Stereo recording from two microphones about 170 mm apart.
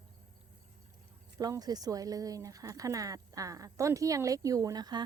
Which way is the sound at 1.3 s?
20° right (ahead or behind).